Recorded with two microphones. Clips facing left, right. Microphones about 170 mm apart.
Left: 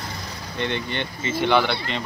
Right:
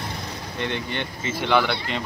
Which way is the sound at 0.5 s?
5° right (ahead or behind).